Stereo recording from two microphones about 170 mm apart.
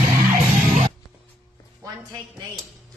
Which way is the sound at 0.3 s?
45° right (ahead or behind).